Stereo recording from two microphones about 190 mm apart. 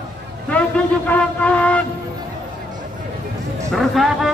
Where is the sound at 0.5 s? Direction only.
5° left (ahead or behind).